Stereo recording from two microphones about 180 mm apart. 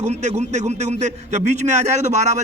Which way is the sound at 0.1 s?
40° right (ahead or behind).